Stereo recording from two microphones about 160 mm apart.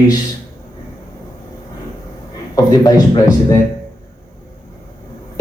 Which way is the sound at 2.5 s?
25° left (ahead or behind).